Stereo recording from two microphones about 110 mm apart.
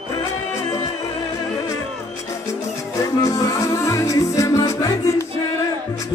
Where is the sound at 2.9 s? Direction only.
30° left (ahead or behind).